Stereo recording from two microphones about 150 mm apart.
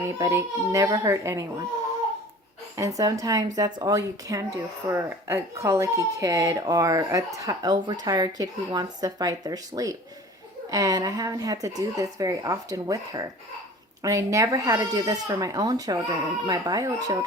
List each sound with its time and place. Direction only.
0.2 s speech: 20° right (ahead or behind)
2.7 s speech: 20° right (ahead or behind)